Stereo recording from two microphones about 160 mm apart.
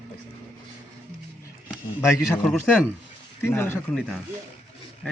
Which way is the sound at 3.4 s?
15° left (ahead or behind).